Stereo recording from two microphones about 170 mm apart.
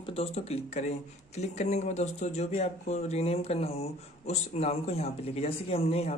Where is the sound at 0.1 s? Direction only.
35° left (ahead or behind).